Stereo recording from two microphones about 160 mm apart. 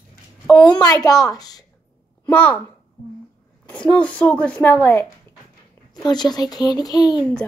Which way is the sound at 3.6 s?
10° left (ahead or behind).